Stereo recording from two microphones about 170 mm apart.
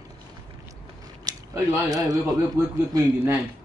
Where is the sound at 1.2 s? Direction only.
20° right (ahead or behind).